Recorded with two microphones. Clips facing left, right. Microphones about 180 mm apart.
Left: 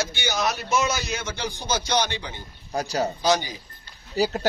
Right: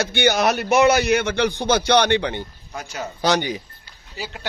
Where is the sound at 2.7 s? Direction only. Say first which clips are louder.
Left 7 dB; 35° left (ahead or behind).